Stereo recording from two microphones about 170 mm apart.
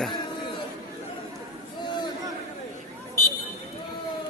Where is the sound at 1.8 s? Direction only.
25° left (ahead or behind).